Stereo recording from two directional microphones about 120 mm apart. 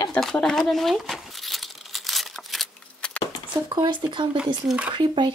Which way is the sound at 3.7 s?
35° right (ahead or behind).